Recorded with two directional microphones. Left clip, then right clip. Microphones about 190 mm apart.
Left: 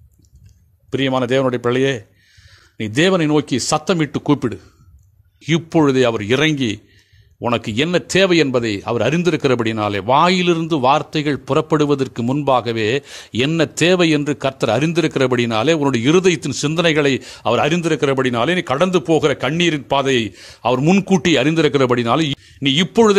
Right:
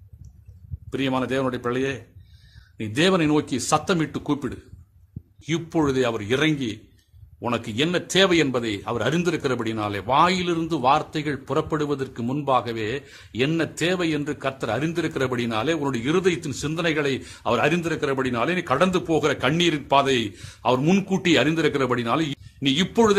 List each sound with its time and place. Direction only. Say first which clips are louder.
0.8 s a man's voice: left 7 dB; 30° left (ahead or behind)